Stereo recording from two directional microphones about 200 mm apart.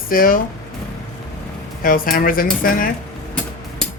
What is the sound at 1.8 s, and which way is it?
Speech, 45° left (ahead or behind).